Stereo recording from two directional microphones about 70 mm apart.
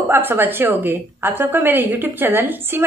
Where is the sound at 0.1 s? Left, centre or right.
Right.